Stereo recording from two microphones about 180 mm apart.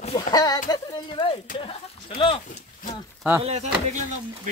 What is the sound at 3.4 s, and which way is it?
Speech, 35° right (ahead or behind).